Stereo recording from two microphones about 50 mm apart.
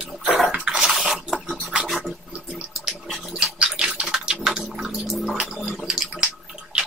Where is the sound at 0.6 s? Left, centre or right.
Centre.